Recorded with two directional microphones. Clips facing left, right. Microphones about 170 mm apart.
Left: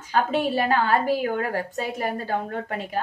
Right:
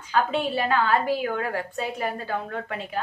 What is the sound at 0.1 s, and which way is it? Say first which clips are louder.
A woman's voice: left 2 dB; 40° left (ahead or behind).